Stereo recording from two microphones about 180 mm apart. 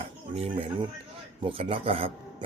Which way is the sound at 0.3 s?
30° right (ahead or behind).